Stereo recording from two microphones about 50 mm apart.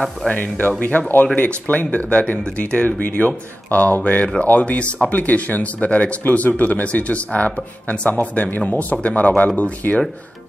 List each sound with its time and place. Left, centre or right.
0.3 s speech: left